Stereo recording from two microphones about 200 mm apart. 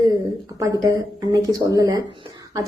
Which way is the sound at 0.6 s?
20° right (ahead or behind).